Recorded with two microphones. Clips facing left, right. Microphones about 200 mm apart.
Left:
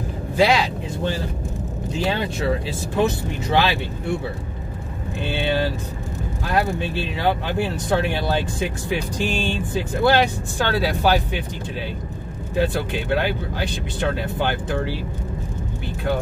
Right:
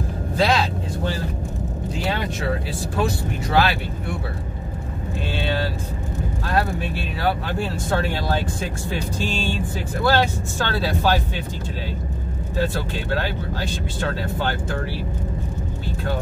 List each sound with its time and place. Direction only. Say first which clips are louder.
0.4 s speech: left 2 dB; 15° left (ahead or behind)
3.0 s speech: left 3 dB; 20° left (ahead or behind)
7.2 s speech: left 2 dB; 20° left (ahead or behind)
12.5 s speech: left 3 dB; 15° left (ahead or behind)